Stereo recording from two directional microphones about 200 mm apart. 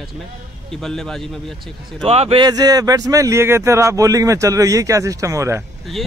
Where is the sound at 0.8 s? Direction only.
Centre (ahead or behind).